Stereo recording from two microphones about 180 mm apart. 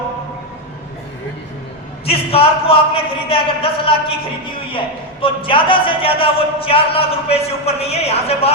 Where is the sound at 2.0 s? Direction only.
30° left (ahead or behind).